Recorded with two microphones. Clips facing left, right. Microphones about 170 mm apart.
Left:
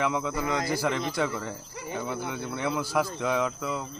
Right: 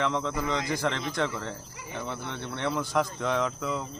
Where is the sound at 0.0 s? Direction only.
5° left (ahead or behind).